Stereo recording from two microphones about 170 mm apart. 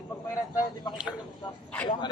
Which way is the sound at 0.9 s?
25° left (ahead or behind).